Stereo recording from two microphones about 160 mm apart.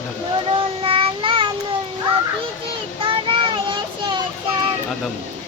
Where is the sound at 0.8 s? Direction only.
35° right (ahead or behind).